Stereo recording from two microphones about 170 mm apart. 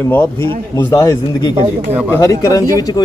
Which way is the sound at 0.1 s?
15° left (ahead or behind).